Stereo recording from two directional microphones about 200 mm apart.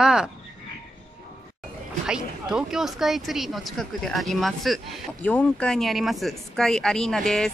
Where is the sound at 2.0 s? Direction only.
5° right (ahead or behind).